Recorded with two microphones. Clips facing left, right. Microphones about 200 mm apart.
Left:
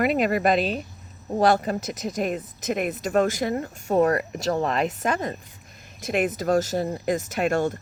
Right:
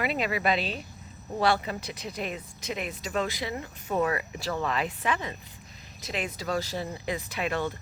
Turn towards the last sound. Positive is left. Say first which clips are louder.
# left 7 dB
turn(degrees=50)  # may be behind; listen again after turning